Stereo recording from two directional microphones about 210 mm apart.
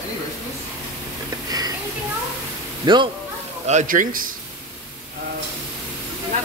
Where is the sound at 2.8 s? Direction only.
20° right (ahead or behind).